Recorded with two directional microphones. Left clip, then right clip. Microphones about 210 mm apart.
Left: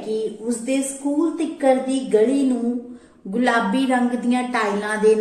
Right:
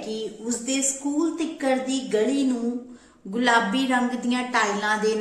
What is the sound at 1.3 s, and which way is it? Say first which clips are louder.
Speech: left 6 dB; 20° right (ahead or behind).